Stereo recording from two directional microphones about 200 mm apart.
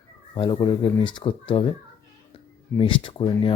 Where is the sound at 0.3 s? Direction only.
25° left (ahead or behind).